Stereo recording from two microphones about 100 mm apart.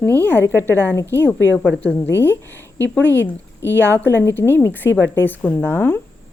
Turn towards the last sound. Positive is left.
turn(degrees=25)  # may be behind; listen again after turning